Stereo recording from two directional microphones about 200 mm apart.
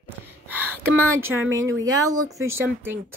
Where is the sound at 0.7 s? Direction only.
90° right.